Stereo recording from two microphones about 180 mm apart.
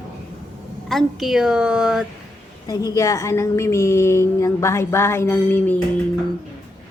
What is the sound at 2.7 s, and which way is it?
A woman's voice, 20° left (ahead or behind).